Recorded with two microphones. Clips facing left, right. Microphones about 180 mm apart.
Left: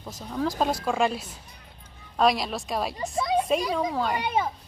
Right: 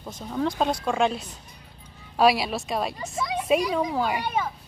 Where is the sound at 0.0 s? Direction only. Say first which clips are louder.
Right 1 dB; centre (ahead or behind).